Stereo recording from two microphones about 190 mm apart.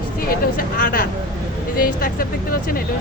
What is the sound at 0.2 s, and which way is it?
Speech, 50° left (ahead or behind).